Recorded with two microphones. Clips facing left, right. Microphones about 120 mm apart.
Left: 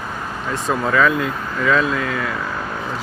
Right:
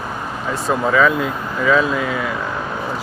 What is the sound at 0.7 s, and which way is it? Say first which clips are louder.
Speech: right 2 dB; 5° right (ahead or behind).